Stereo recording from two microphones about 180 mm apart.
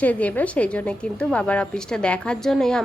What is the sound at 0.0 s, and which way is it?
A woman's voice, 10° left (ahead or behind).